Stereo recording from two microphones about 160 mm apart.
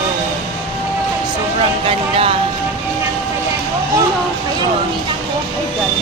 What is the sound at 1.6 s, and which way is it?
Vehicle, 40° right (ahead or behind).